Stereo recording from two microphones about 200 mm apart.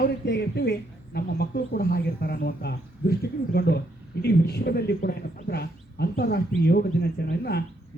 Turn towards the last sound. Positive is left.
turn(degrees=55)  # may be behind; listen again after turning